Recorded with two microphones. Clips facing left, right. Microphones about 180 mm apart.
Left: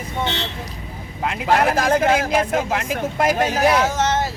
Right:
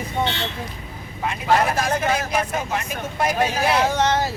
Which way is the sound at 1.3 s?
75° left (ahead or behind).